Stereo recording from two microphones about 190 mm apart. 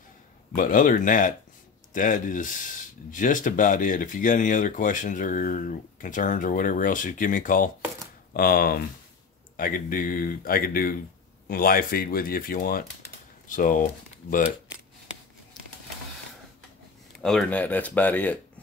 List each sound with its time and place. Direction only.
0.6 s speech: 45° left (ahead or behind)
17.2 s speech: 5° left (ahead or behind)